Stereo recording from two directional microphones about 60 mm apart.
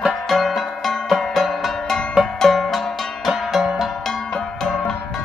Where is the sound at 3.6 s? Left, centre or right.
Centre.